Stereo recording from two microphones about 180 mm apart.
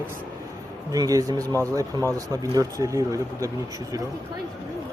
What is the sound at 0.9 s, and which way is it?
Speech, 20° right (ahead or behind).